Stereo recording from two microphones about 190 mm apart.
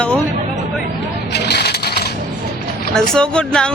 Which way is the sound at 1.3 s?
60° left (ahead or behind).